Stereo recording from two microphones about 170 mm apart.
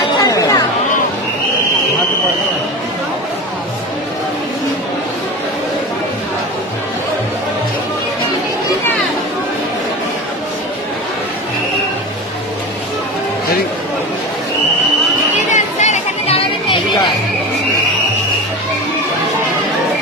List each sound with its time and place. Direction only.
0.2 s chatter: 20° left (ahead or behind)
15.4 s chatter: 45° left (ahead or behind); by 17.0 s 30° left (ahead or behind)